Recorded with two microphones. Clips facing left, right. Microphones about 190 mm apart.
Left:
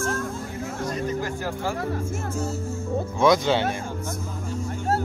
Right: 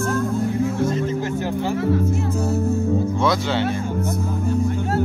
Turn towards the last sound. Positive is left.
turn(degrees=15)  # may be behind; listen again after turning